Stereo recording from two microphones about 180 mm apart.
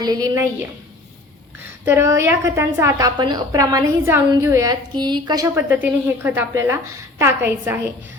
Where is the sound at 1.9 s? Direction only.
15° right (ahead or behind).